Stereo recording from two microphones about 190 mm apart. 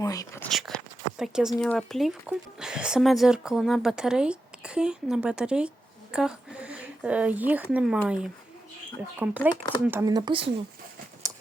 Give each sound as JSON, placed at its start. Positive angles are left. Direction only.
{"t": 0.0, "sound": "speech", "side_deg": 20}
{"t": 1.2, "sound": "speech", "side_deg": -5}